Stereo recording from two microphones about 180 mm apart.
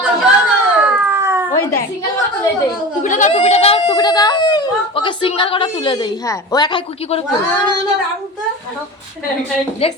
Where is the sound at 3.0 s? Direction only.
45° left (ahead or behind); by 7.2 s 25° left (ahead or behind).